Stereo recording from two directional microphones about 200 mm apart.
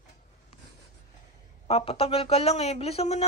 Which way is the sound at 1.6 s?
30° left (ahead or behind).